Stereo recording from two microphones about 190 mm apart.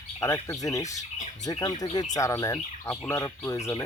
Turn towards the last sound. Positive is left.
turn(degrees=15)  # may be behind; listen again after turning